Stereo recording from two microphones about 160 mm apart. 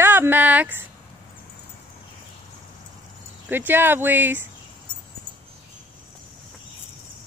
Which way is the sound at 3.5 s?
15° right (ahead or behind).